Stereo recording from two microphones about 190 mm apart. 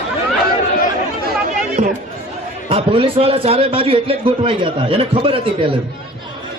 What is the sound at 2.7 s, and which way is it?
A man's voice, 30° right (ahead or behind).